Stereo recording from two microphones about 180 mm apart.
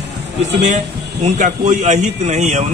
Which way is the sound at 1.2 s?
40° right (ahead or behind).